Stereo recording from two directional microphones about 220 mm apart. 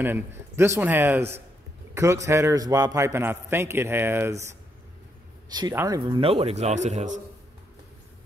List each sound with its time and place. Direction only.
0.0 s a man's voice: 10° right (ahead or behind); by 7.2 s 30° right (ahead or behind)